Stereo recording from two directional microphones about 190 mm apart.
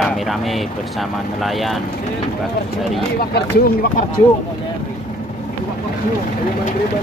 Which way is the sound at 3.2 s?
55° left (ahead or behind).